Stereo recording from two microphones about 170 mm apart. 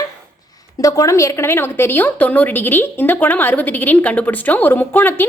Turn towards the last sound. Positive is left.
turn(degrees=10)  # may be behind; listen again after turning